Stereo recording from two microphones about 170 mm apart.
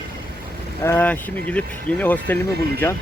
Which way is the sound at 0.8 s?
10° left (ahead or behind).